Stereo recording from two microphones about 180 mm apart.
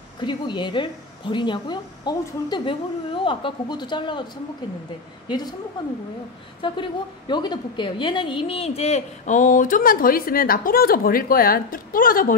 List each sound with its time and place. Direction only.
0.2 s speech: 25° left (ahead or behind)
6.6 s a woman's voice: 25° left (ahead or behind); by 12.4 s 50° left (ahead or behind)